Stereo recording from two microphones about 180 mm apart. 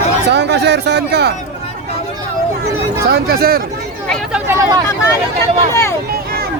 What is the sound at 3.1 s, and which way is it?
Speech, 60° right (ahead or behind).